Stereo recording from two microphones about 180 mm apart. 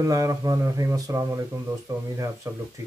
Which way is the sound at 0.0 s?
20° right (ahead or behind).